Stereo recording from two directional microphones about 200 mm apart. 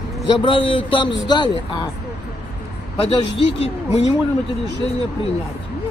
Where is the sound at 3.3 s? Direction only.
30° left (ahead or behind).